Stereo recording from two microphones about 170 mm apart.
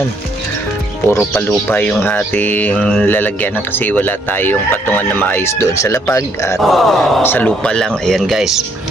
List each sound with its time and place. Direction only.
1.1 s speech: 15° left (ahead or behind)
6.6 s speech: centre (ahead or behind)
7.2 s speech: 10° left (ahead or behind)